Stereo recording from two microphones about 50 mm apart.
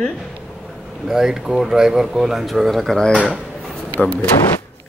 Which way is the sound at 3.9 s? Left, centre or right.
Left.